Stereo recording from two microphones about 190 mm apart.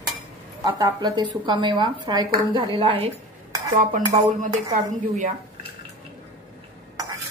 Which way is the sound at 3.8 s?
45° right (ahead or behind).